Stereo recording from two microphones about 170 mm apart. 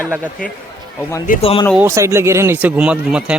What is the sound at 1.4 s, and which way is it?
Speech, 35° left (ahead or behind).